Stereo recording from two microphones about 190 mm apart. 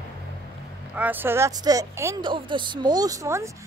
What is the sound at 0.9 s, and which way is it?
A woman's voice, 10° right (ahead or behind).